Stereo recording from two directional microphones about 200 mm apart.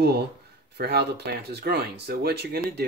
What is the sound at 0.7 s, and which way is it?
Speech, 55° right (ahead or behind).